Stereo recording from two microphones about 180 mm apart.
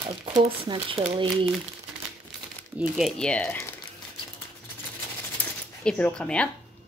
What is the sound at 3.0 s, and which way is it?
Speech, 5° left (ahead or behind).